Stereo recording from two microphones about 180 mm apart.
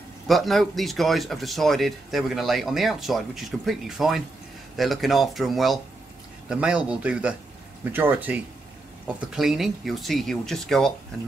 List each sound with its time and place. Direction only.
0.3 s speech: centre (ahead or behind)